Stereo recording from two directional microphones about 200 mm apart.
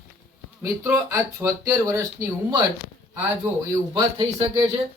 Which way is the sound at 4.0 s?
25° right (ahead or behind).